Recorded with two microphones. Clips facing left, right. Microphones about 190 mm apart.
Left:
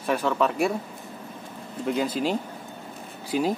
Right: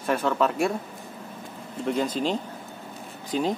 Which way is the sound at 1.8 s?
5° left (ahead or behind).